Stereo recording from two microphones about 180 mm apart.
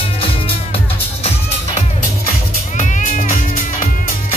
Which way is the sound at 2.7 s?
40° left (ahead or behind).